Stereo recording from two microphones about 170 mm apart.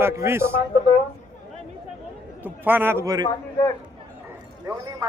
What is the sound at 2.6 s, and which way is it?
Speech, 10° right (ahead or behind).